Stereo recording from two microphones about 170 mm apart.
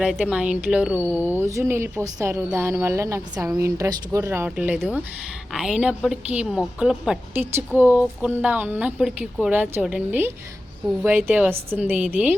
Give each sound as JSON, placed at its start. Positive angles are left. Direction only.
{"t": 0.0, "sound": "a woman's voice", "side_deg": -5}